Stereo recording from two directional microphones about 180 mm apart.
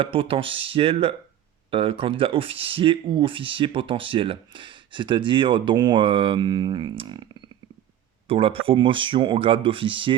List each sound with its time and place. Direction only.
0.0 s speech: 30° right (ahead or behind)
8.3 s speech: 30° right (ahead or behind)